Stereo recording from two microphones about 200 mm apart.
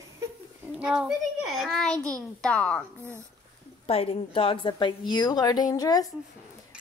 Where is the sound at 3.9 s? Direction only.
30° left (ahead or behind).